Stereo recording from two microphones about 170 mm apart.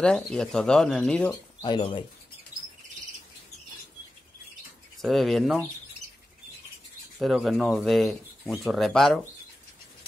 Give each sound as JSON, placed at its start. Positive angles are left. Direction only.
{"t": 0.0, "sound": "speech", "side_deg": 5}
{"t": 1.3, "sound": "speech", "side_deg": 25}
{"t": 4.9, "sound": "speech", "side_deg": 0}
{"t": 7.2, "sound": "speech", "side_deg": 0}